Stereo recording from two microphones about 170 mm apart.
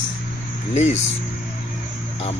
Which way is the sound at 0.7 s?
40° left (ahead or behind).